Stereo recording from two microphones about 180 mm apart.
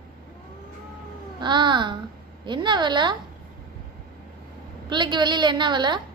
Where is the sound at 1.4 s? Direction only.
25° right (ahead or behind).